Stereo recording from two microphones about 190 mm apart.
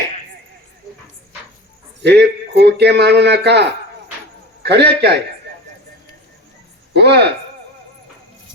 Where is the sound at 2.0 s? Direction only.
65° right (ahead or behind).